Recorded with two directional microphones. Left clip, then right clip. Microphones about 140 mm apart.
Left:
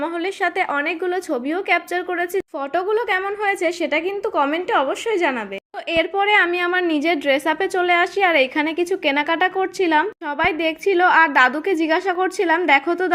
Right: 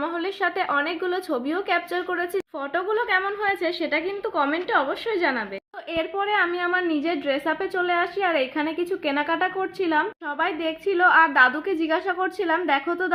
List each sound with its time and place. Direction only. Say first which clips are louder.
0.0 s a woman's voice: left 3 dB; 30° left (ahead or behind)